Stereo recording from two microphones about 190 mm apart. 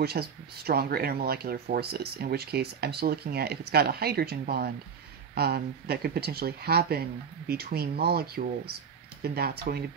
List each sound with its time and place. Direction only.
0.0 s speech: 55° right (ahead or behind)